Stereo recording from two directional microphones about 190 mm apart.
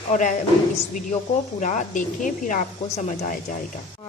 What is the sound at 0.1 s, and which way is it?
Speech, 40° left (ahead or behind).